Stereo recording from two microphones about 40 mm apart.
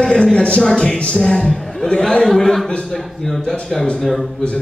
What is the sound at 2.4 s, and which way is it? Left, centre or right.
Speech, centre.